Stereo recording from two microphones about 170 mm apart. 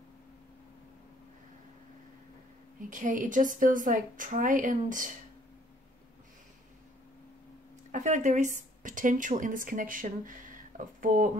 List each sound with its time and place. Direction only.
2.9 s a woman's voice: 50° right (ahead or behind)
7.9 s speech: 45° right (ahead or behind)